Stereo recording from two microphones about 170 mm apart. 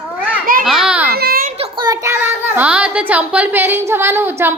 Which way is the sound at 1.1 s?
65° right (ahead or behind).